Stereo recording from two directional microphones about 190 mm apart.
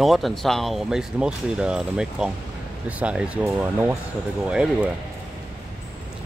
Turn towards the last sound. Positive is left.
turn(degrees=-5)  # may be behind; listen again after turning